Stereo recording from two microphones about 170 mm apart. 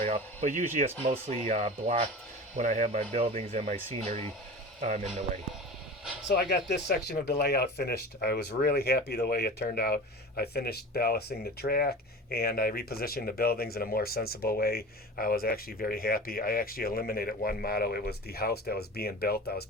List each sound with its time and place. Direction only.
0.0 s speech: 40° right (ahead or behind)
6.2 s speech: 70° left (ahead or behind)